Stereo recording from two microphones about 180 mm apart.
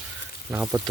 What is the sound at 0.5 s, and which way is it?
Speech, 10° right (ahead or behind).